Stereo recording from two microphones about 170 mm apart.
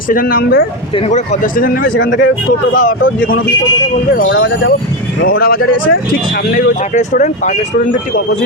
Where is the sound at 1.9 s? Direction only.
90° left.